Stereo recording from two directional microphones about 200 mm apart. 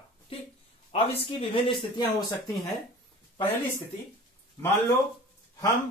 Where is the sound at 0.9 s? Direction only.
25° left (ahead or behind).